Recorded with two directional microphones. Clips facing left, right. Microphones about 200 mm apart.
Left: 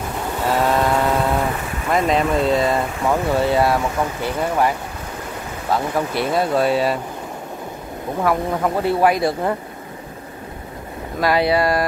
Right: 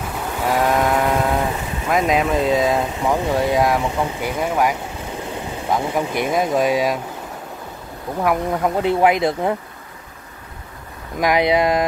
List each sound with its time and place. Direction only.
0.5 s a sound: 10° right (ahead or behind)
1.2 s vehicle: centre (ahead or behind)
2.4 s speech: centre (ahead or behind)
2.8 s speech: 15° right (ahead or behind)
8.3 s speech: 15° right (ahead or behind)
11.1 s speech: 15° right (ahead or behind)